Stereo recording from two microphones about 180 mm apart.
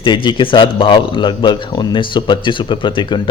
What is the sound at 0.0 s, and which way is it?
Speech, 25° left (ahead or behind).